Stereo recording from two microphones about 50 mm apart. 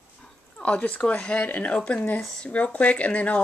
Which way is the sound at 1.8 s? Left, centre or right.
Centre.